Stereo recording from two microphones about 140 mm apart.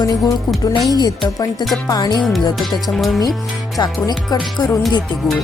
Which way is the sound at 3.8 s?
30° left (ahead or behind).